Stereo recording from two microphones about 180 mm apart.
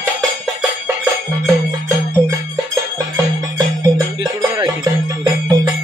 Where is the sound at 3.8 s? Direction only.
25° right (ahead or behind).